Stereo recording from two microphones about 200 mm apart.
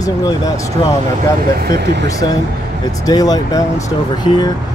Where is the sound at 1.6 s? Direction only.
55° right (ahead or behind).